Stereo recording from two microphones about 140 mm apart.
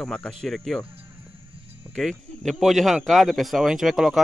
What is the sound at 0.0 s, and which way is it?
Speech, 5° left (ahead or behind).